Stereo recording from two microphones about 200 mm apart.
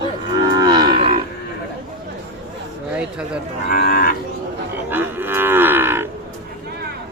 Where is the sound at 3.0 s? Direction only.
5° right (ahead or behind).